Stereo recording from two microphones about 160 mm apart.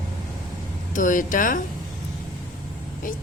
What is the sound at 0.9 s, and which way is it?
Speech, 55° left (ahead or behind).